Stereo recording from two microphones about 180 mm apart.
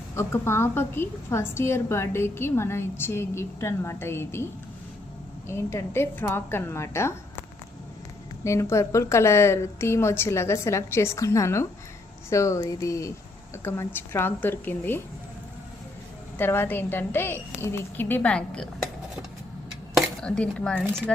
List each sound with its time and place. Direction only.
0.2 s a woman's voice: 15° left (ahead or behind)
5.5 s a woman's voice: 15° left (ahead or behind)
8.4 s a woman's voice: 15° left (ahead or behind)
16.4 s a woman's voice: 10° left (ahead or behind)
20.0 s speech: 5° left (ahead or behind)